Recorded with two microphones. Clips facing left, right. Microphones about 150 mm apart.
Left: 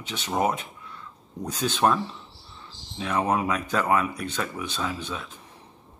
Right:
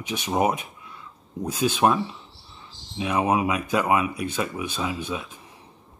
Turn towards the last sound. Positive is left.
turn(degrees=-10)  # may be behind; listen again after turning